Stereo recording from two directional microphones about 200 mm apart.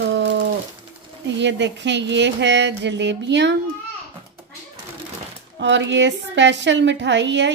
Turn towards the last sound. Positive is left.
turn(degrees=-60)  # may be behind; listen again after turning